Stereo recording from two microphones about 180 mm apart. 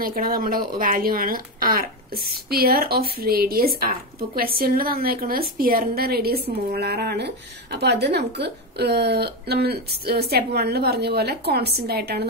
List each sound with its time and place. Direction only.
0.0 s speech: 50° right (ahead or behind)